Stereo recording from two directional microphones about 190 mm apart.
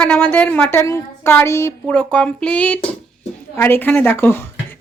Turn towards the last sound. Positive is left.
turn(degrees=10)  # may be behind; listen again after turning